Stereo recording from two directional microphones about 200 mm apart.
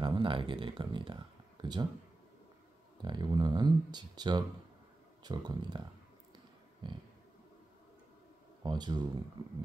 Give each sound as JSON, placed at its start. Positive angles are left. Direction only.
{"t": 0.0, "sound": "speech", "side_deg": -25}
{"t": 3.0, "sound": "speech", "side_deg": -20}
{"t": 6.3, "sound": "a sound", "side_deg": -25}
{"t": 8.6, "sound": "speech", "side_deg": -20}